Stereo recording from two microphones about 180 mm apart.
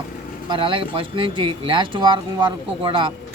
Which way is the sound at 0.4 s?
25° right (ahead or behind).